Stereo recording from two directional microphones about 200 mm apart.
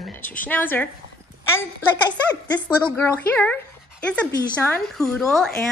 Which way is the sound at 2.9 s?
10° left (ahead or behind).